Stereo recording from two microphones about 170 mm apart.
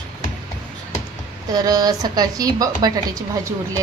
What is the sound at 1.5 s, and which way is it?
A woman's voice, 20° right (ahead or behind).